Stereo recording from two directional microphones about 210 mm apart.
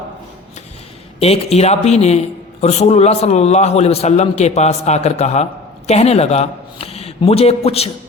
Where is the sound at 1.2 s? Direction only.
30° left (ahead or behind).